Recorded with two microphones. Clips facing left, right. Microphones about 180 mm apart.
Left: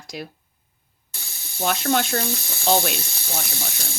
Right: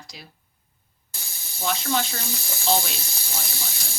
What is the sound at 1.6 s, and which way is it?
A woman's voice, 55° left (ahead or behind).